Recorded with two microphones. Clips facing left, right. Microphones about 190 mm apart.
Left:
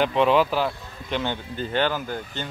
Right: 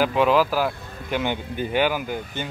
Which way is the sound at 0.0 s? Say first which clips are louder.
Even; 5° right (ahead or behind).